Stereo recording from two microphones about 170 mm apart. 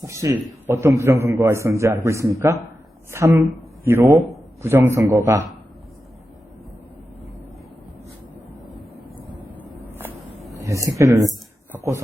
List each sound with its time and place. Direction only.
0.0 s a sound: 20° right (ahead or behind)
0.7 s a man's voice: 15° right (ahead or behind)
10.5 s speech: 20° right (ahead or behind)